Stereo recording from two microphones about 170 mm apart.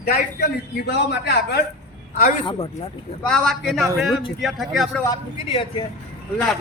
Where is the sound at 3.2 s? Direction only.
5° left (ahead or behind).